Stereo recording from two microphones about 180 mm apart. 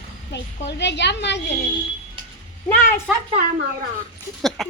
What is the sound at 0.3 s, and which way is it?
Speech, 70° left (ahead or behind).